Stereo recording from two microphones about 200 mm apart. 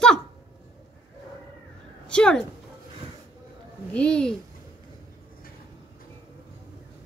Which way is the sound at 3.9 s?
5° left (ahead or behind).